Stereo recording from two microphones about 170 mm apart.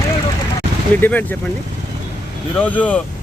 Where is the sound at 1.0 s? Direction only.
10° left (ahead or behind).